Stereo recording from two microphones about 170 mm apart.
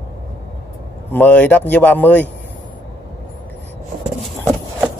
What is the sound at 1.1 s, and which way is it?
Speech, 10° left (ahead or behind).